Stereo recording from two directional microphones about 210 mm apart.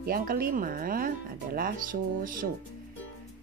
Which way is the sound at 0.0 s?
45° right (ahead or behind).